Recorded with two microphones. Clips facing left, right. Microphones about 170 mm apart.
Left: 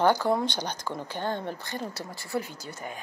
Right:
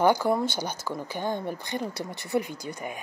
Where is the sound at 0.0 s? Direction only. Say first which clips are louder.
Right 1 dB; 10° right (ahead or behind).